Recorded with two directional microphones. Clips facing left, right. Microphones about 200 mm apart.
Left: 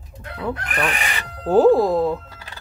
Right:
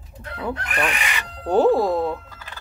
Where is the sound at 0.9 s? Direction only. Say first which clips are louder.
Left 1 dB; 35° left (ahead or behind).